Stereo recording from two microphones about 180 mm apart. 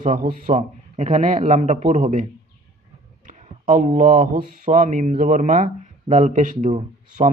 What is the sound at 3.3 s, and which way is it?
A man's voice, 45° right (ahead or behind).